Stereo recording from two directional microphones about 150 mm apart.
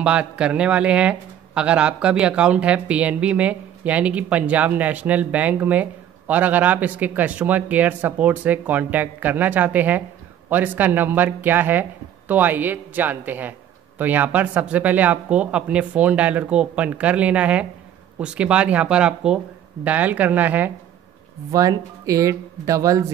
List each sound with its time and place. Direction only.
0.0 s speech: 5° right (ahead or behind)
21.5 s speech: 20° right (ahead or behind)